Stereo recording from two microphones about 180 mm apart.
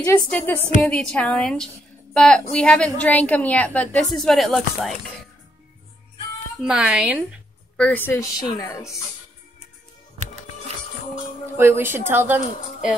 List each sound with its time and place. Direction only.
0.0 s a woman's voice: 10° left (ahead or behind)
6.6 s a woman's voice: 5° right (ahead or behind)
7.7 s speech: 10° left (ahead or behind)
11.5 s a woman's voice: 15° right (ahead or behind)